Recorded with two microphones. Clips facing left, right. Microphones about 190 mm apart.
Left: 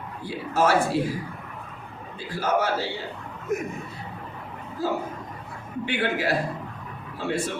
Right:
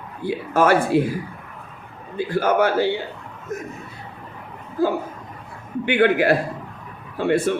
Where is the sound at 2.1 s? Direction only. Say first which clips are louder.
Right 6 dB; 55° right (ahead or behind).